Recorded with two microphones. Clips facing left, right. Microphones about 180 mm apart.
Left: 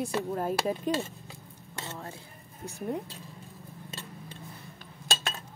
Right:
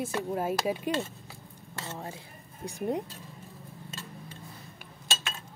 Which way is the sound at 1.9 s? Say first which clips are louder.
Right 2 dB; 25° right (ahead or behind).